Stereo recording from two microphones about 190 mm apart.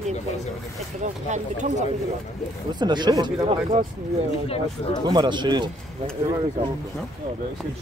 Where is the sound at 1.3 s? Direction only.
40° right (ahead or behind).